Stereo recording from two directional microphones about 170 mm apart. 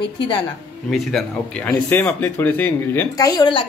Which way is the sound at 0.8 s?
5° left (ahead or behind).